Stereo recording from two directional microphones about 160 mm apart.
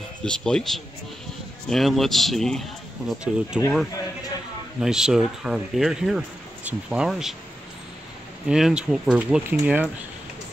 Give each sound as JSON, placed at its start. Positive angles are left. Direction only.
{"t": 0.2, "sound": "speech", "side_deg": 5}
{"t": 4.7, "sound": "speech", "side_deg": -5}
{"t": 8.5, "sound": "speech", "side_deg": -5}